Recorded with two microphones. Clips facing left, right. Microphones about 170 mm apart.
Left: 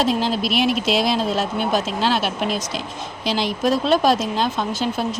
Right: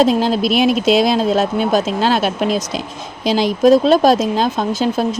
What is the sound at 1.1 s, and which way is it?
Speech, 45° right (ahead or behind).